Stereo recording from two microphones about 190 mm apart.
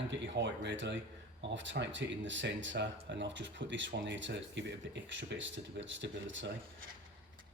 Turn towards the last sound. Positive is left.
turn(degrees=-75)  # may be behind; listen again after turning